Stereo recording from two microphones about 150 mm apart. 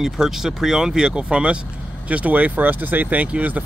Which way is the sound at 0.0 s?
5° right (ahead or behind).